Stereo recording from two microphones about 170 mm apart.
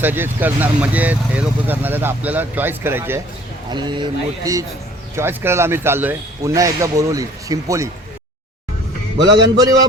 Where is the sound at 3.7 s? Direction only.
25° right (ahead or behind).